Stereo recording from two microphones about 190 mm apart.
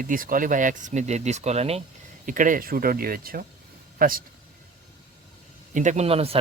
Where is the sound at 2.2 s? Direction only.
45° right (ahead or behind).